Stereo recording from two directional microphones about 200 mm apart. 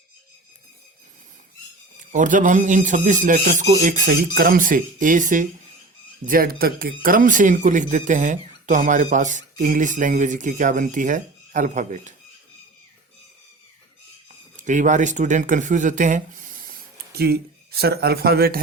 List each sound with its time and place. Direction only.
2.1 s speech: 40° right (ahead or behind)
14.5 s speech: 40° right (ahead or behind)
17.2 s speech: 50° right (ahead or behind)